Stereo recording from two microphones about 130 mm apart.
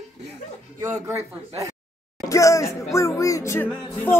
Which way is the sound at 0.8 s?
20° right (ahead or behind).